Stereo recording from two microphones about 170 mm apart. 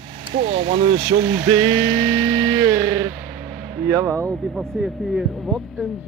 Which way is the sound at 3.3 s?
15° right (ahead or behind).